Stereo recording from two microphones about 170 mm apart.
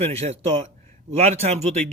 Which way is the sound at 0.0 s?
35° right (ahead or behind).